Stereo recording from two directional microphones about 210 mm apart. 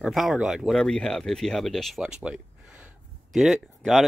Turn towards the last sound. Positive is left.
turn(degrees=0)  # may be behind; listen again after turning